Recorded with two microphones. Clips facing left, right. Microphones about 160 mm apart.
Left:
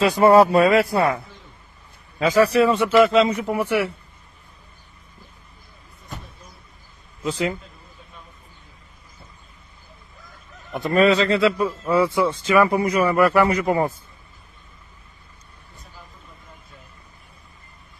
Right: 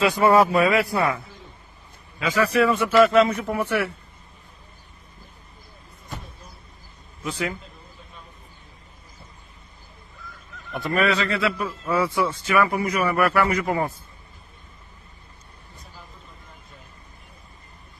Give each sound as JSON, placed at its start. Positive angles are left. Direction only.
{"t": 0.0, "sound": "a man's voice", "side_deg": 35}
{"t": 7.2, "sound": "a man's voice", "side_deg": 25}
{"t": 10.7, "sound": "a man's voice", "side_deg": 25}